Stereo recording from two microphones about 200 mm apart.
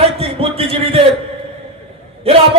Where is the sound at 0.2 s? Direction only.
30° right (ahead or behind).